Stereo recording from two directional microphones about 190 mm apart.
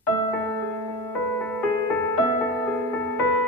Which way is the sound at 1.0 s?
10° left (ahead or behind).